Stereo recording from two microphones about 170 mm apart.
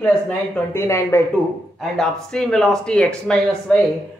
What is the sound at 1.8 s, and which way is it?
Speech, 5° left (ahead or behind).